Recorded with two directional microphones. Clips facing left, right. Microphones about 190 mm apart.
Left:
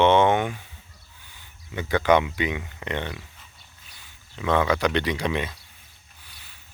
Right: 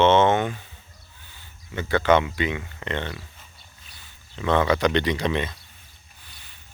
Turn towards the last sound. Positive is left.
turn(degrees=10)  # may be behind; listen again after turning